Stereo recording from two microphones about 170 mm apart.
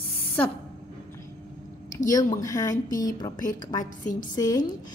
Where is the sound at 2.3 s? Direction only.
20° left (ahead or behind).